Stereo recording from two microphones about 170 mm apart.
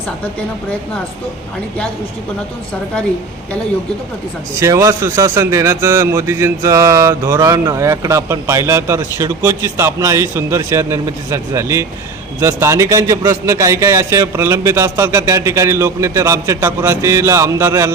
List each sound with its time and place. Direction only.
4.6 s a man's voice: 20° right (ahead or behind)